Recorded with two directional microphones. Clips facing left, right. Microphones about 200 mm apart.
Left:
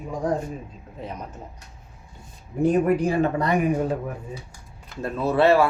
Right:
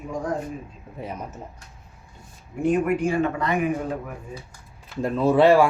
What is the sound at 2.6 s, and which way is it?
Speech, 35° left (ahead or behind).